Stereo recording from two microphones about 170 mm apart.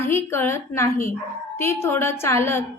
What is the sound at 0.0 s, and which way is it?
A woman's voice, 15° left (ahead or behind).